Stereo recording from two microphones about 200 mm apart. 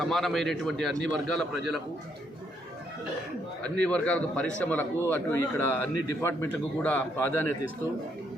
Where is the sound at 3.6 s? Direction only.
5° left (ahead or behind).